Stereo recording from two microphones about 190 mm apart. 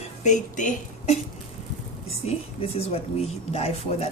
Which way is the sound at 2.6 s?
30° left (ahead or behind).